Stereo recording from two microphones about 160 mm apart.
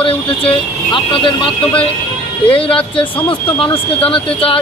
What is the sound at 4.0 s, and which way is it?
Speech, 35° left (ahead or behind).